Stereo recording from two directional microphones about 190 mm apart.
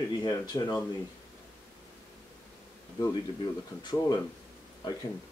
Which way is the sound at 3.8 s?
20° left (ahead or behind).